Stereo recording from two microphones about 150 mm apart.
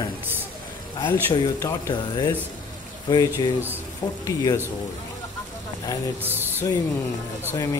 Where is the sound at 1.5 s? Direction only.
20° left (ahead or behind).